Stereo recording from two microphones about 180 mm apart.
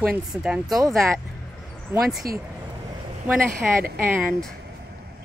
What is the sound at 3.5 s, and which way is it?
Speech, 55° right (ahead or behind).